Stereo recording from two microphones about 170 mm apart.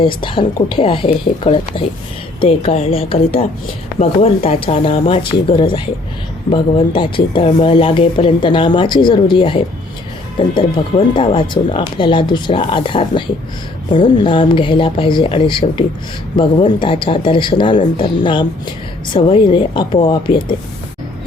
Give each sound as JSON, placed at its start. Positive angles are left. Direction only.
{"t": 0.0, "sound": "speech", "side_deg": 30}